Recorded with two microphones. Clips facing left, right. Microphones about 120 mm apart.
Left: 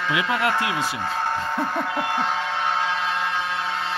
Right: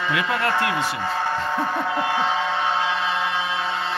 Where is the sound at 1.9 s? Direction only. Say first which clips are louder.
Right 2 dB; centre (ahead or behind).